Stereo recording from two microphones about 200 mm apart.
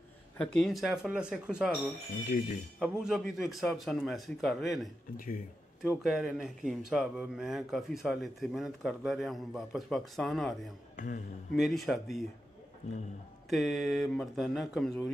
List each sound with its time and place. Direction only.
0.4 s speech: centre (ahead or behind)
5.1 s speech: 45° left (ahead or behind)
5.9 s speech: centre (ahead or behind)
11.0 s a man's voice: 40° left (ahead or behind)
11.6 s speech: centre (ahead or behind)
13.5 s speech: centre (ahead or behind)